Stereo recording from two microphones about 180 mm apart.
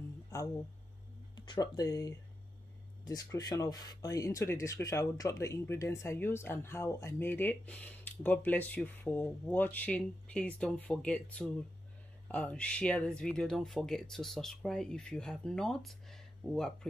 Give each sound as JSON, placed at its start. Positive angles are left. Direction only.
{"t": 1.3, "sound": "speech", "side_deg": 25}